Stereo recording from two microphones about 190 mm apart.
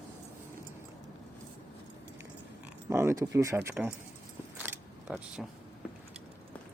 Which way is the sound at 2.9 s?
15° right (ahead or behind).